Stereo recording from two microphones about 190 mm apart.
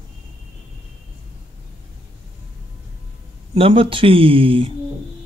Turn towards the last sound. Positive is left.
turn(degrees=-30)  # may be behind; listen again after turning